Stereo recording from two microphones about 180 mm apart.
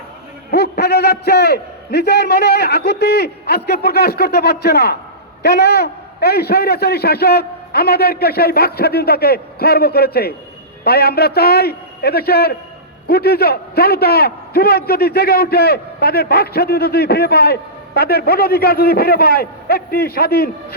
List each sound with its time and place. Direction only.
0.5 s a man's voice: 65° left (ahead or behind)